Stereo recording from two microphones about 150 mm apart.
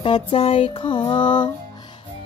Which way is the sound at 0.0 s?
40° left (ahead or behind).